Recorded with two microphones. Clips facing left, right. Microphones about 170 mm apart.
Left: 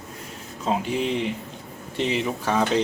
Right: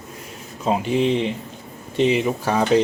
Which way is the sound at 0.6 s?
20° right (ahead or behind).